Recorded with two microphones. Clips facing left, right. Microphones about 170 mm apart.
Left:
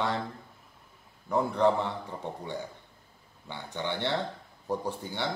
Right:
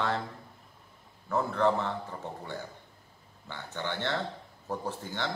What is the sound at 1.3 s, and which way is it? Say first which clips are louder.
Speech: left 2 dB; 15° left (ahead or behind).